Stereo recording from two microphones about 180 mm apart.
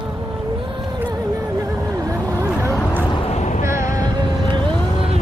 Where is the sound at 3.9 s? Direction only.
20° right (ahead or behind).